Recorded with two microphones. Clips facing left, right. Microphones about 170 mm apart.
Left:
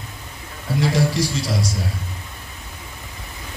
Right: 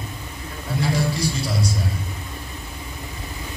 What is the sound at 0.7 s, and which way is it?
Speech, 90° left.